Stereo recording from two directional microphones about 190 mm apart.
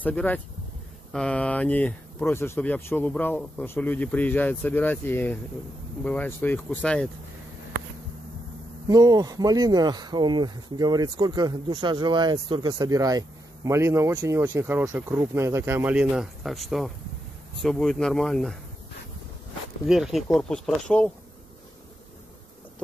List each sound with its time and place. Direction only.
0.0 s speech: 10° left (ahead or behind)
8.8 s speech: 20° right (ahead or behind); by 18.6 s centre (ahead or behind)
19.9 s speech: centre (ahead or behind)